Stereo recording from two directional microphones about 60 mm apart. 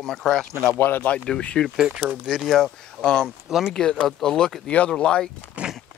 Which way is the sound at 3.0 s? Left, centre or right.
Centre.